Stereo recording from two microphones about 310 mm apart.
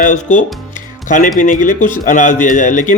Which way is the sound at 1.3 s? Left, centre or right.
Left.